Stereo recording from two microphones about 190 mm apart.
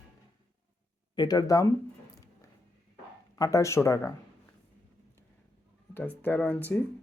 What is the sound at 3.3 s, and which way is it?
Speech, 15° left (ahead or behind).